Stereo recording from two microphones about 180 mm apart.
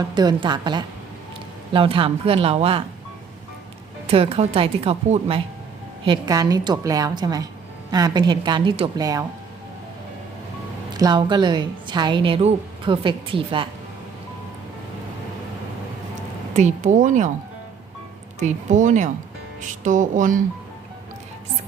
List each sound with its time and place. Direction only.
0.0 s a woman's voice: 25° right (ahead or behind)
4.0 s speech: 35° right (ahead or behind)
6.1 s a woman's voice: 20° right (ahead or behind)
10.9 s a woman's voice: 25° right (ahead or behind)
16.6 s a woman's voice: 40° right (ahead or behind)
18.3 s a woman's voice: 40° right (ahead or behind)